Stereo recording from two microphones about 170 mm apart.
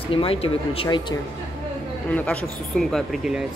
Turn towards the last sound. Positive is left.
turn(degrees=-5)  # may be behind; listen again after turning